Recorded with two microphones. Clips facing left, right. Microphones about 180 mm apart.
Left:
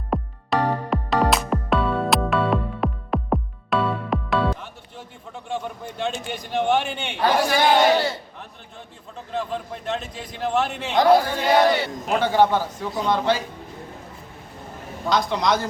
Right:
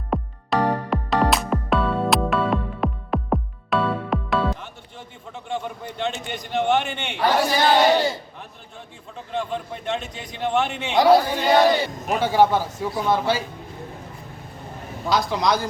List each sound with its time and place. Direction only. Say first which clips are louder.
0.1 s music: even; centre (ahead or behind)
6.8 s a man's voice: even; 5° left (ahead or behind)
9.3 s a man's voice: even; centre (ahead or behind)
11.3 s speech: right 1 dB; 5° left (ahead or behind)
11.8 s a man's voice: even; 10° right (ahead or behind)
15.0 s a man's voice: even; 5° right (ahead or behind)